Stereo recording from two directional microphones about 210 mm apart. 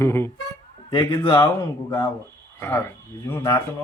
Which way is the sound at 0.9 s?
25° left (ahead or behind).